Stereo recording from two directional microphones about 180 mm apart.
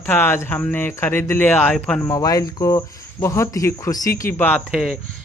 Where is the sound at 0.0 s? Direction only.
10° left (ahead or behind).